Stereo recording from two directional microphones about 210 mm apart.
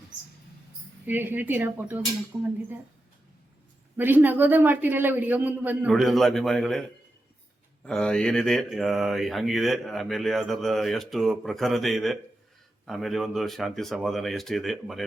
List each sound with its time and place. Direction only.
1.0 s a man's voice: 10° right (ahead or behind)
3.9 s a man's voice: 10° right (ahead or behind)
7.9 s speech: 5° left (ahead or behind)